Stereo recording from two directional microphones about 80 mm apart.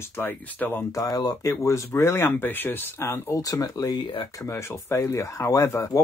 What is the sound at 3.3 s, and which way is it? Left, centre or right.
Speech, left.